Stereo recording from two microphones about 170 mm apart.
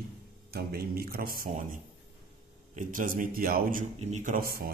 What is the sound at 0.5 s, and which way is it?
A man's voice, 65° right (ahead or behind).